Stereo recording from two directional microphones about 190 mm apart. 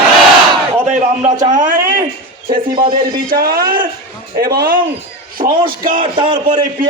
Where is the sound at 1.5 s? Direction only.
45° right (ahead or behind).